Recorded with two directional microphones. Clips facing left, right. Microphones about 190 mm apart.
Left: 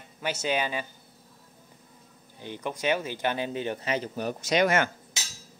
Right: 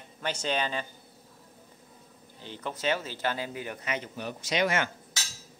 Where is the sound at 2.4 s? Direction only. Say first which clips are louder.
Left 3 dB; 15° left (ahead or behind); by 4.9 s 45° left (ahead or behind).